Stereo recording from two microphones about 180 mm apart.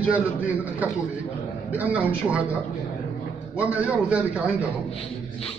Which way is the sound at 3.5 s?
5° right (ahead or behind).